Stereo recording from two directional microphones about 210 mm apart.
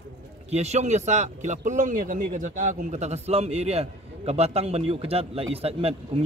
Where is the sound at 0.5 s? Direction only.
30° right (ahead or behind).